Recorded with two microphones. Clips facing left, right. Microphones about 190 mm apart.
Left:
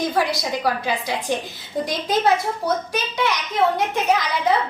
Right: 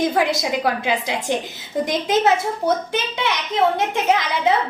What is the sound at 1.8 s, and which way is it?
A woman's voice, 20° right (ahead or behind).